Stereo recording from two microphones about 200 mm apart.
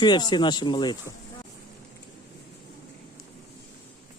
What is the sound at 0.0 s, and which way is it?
Speech, 20° left (ahead or behind).